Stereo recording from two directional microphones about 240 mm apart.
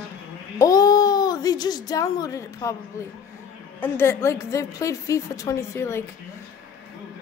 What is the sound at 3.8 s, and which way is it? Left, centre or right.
A child's voice, centre.